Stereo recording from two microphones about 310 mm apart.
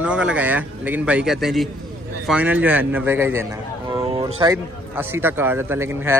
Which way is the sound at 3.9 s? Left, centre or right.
Centre.